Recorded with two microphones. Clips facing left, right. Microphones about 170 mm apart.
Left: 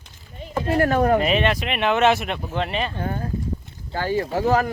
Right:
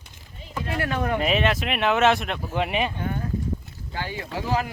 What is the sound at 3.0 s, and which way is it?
Speech, 35° left (ahead or behind).